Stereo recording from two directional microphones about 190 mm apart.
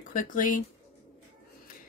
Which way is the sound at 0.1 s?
45° left (ahead or behind).